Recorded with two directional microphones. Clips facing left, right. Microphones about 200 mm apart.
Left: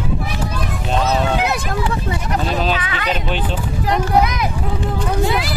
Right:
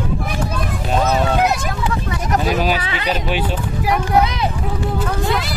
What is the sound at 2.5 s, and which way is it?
Speech, 10° right (ahead or behind).